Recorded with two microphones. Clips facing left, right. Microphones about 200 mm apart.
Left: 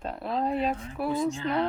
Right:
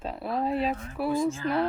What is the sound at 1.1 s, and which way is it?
Speech, 20° left (ahead or behind).